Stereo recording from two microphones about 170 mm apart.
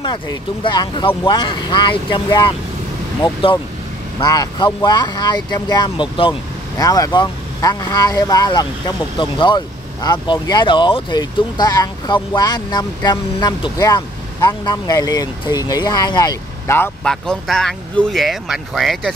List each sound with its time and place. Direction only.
0.0 s speech: 25° left (ahead or behind)
4.2 s speech: 25° left (ahead or behind)
17.1 s speech: 5° left (ahead or behind)